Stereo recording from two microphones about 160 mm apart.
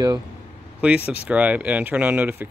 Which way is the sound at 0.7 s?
10° right (ahead or behind).